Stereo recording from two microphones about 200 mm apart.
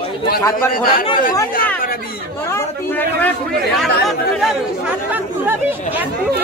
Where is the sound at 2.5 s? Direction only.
10° left (ahead or behind).